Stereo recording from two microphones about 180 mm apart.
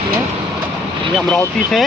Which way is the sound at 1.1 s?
Centre (ahead or behind).